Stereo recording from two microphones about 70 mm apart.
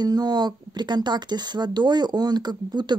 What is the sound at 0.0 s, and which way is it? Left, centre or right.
Speech, right.